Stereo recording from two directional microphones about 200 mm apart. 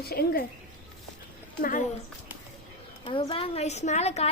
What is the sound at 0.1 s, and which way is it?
Speech, 50° left (ahead or behind).